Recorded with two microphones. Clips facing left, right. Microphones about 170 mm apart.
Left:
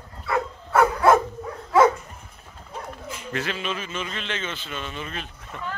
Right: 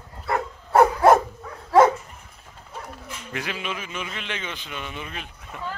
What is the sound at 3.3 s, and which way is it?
A man's voice, 15° right (ahead or behind).